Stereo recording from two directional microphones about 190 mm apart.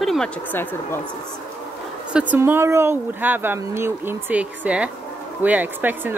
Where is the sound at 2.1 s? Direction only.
5° right (ahead or behind).